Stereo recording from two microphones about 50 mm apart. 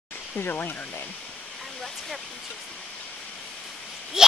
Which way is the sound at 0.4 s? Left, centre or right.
Left.